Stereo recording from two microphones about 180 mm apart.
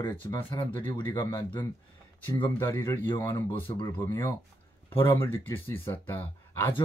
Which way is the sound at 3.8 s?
25° left (ahead or behind).